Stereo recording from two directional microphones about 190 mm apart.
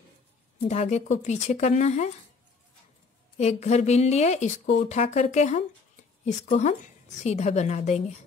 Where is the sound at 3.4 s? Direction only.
35° left (ahead or behind).